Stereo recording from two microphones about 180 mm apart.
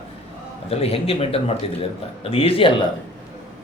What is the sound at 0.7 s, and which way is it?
A man's voice, 35° left (ahead or behind).